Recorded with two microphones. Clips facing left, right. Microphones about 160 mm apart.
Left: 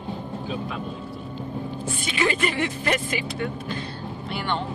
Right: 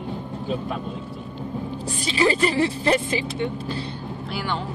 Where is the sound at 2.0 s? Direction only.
35° right (ahead or behind).